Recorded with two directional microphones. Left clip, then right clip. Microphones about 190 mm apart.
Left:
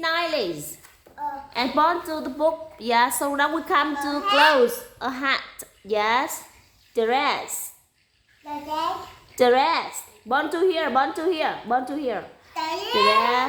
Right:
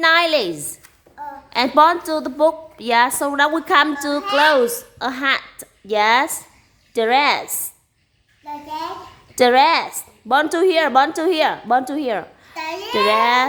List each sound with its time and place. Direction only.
0.0 s a woman's voice: 35° right (ahead or behind)
4.2 s a woman's voice: 10° right (ahead or behind)
9.3 s a woman's voice: 25° right (ahead or behind)
12.5 s a child's voice: 10° right (ahead or behind)
13.1 s a woman's voice: 25° right (ahead or behind)